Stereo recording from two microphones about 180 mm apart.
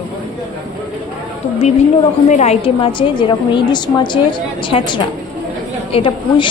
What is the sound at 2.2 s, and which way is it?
A woman's voice, 40° left (ahead or behind).